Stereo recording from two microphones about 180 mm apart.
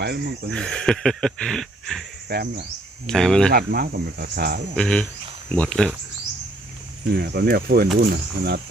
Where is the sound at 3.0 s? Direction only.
5° left (ahead or behind).